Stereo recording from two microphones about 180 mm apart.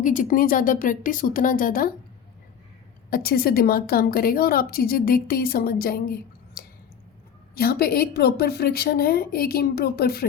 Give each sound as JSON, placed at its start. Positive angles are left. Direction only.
{"t": 0.0, "sound": "speech", "side_deg": 45}
{"t": 3.1, "sound": "a woman's voice", "side_deg": 55}